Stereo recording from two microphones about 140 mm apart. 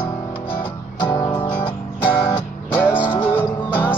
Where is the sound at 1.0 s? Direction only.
30° left (ahead or behind).